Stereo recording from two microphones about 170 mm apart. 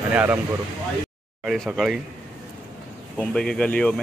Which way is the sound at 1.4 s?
5° right (ahead or behind).